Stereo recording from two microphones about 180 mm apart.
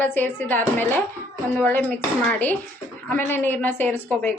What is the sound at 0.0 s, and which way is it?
A woman's voice, 10° left (ahead or behind).